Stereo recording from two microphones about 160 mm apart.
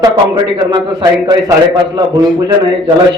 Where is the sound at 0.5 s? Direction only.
25° right (ahead or behind).